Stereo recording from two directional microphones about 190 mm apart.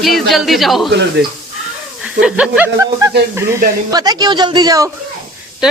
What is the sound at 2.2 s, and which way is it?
Speech, 5° right (ahead or behind).